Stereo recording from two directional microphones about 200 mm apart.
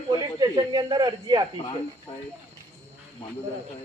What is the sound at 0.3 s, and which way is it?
Speech, 20° right (ahead or behind).